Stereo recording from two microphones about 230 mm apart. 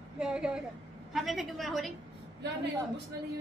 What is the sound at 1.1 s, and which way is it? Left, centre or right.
Speech, centre.